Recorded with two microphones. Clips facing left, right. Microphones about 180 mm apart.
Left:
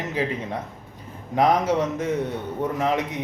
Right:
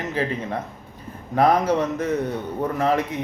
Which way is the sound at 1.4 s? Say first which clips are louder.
Right 1 dB; 20° left (ahead or behind).